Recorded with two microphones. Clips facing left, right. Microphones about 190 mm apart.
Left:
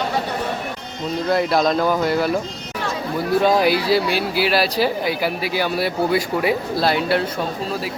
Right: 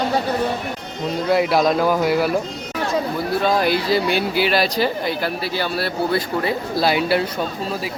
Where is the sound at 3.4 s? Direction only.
10° left (ahead or behind).